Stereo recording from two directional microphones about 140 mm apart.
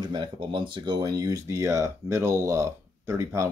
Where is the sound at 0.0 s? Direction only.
35° right (ahead or behind).